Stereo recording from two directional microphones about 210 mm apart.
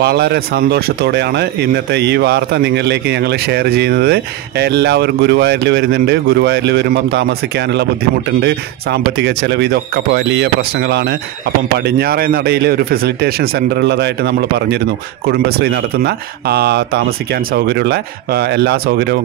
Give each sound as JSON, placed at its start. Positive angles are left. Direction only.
{"t": 0.0, "sound": "speech", "side_deg": -50}